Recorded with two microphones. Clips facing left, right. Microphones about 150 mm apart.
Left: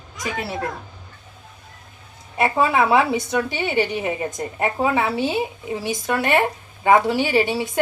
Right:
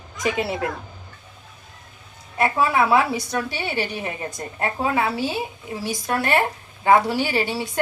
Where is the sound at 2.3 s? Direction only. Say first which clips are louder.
Left 1 dB; 20° left (ahead or behind).